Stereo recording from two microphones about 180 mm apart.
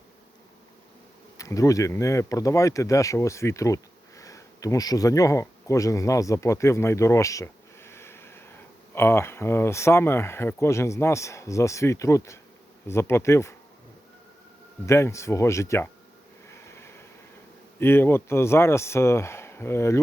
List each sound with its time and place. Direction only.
1.4 s speech: 20° left (ahead or behind)
14.8 s speech: 15° left (ahead or behind)
16.5 s a sound: 15° left (ahead or behind)
17.7 s speech: 10° left (ahead or behind)